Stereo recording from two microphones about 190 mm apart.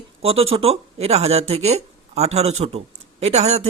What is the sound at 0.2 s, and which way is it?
Speech, 30° right (ahead or behind).